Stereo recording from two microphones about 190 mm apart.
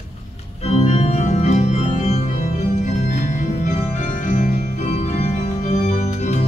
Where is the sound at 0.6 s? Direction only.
35° left (ahead or behind).